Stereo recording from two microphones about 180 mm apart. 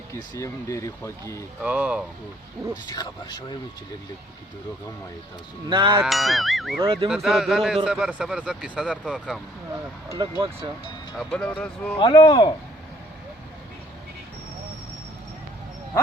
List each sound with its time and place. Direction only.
0.1 s speech: 15° left (ahead or behind)
1.6 s speech: 5° right (ahead or behind)
2.8 s speech: 25° left (ahead or behind)
5.6 s speech: 25° right (ahead or behind)
6.0 s speech: centre (ahead or behind)
10.1 s speech: 25° right (ahead or behind)
11.2 s speech: 5° left (ahead or behind)
11.9 s speech: 30° left (ahead or behind)